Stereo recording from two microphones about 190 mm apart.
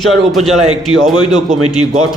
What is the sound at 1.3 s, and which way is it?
Speech, 40° right (ahead or behind).